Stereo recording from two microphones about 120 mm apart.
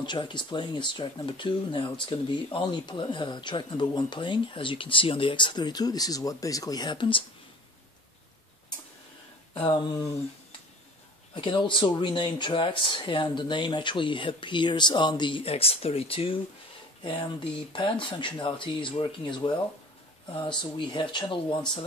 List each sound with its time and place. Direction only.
0.0 s speech: 40° left (ahead or behind)
9.5 s a sound: 50° left (ahead or behind)
11.3 s speech: 45° left (ahead or behind)